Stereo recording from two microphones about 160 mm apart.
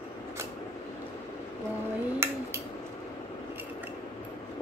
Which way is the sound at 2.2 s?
15° right (ahead or behind).